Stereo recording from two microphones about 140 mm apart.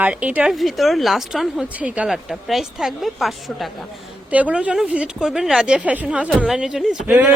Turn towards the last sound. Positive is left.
turn(degrees=-5)  # may be behind; listen again after turning